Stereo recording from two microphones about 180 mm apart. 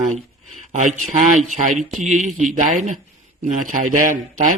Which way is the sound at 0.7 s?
45° right (ahead or behind).